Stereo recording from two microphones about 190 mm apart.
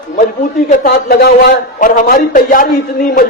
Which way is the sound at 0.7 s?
40° left (ahead or behind).